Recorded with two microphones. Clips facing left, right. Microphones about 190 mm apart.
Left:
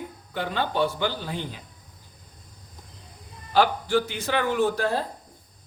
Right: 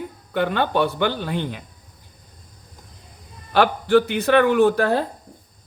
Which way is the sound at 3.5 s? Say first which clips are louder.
Right 5 dB; 60° right (ahead or behind).